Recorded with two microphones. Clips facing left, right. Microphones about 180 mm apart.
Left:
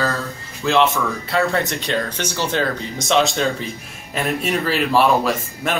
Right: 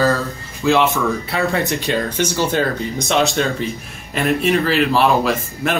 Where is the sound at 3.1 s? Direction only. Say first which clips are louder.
Even; centre (ahead or behind).